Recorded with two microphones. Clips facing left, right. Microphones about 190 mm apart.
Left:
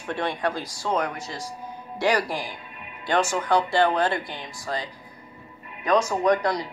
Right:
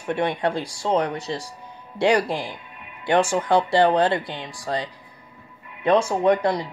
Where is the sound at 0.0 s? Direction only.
20° right (ahead or behind).